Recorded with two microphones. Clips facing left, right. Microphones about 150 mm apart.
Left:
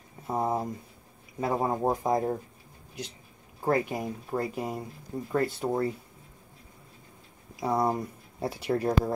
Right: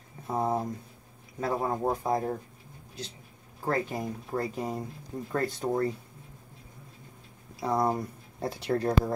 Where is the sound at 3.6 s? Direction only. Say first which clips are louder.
Left 3 dB; 15° left (ahead or behind).